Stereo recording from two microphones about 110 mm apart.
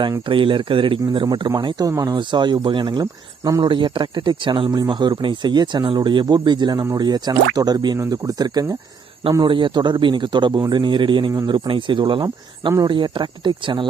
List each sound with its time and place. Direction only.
0.3 s speech: 50° right (ahead or behind); by 3.6 s 35° right (ahead or behind)
3.6 s speech: 50° right (ahead or behind)
9.4 s speech: 50° right (ahead or behind)